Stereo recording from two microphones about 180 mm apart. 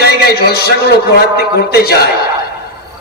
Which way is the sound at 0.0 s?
60° left (ahead or behind).